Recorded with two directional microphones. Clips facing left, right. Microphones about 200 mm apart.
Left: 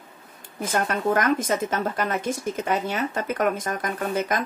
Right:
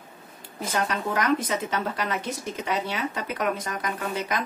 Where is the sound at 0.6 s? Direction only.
50° left (ahead or behind).